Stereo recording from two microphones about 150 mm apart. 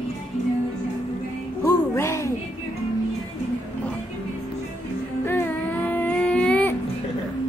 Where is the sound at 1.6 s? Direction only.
20° left (ahead or behind).